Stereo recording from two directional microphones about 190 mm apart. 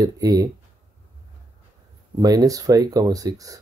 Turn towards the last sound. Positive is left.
turn(degrees=-20)  # may be behind; listen again after turning